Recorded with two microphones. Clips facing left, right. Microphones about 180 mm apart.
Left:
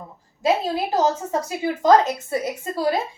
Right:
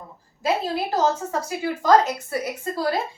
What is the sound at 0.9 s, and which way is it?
A woman's voice, 20° left (ahead or behind).